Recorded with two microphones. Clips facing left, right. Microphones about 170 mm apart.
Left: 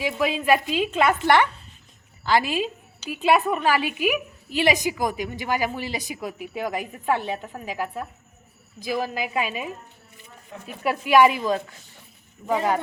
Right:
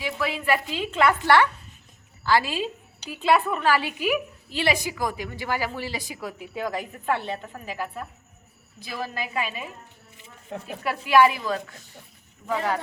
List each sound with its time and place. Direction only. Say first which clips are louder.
0.0 s a woman's voice: left 4 dB; 15° left (ahead or behind)
10.8 s a woman's voice: left 2 dB; 15° left (ahead or behind)